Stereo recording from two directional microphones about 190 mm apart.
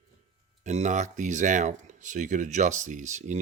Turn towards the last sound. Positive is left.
turn(degrees=-40)  # may be behind; listen again after turning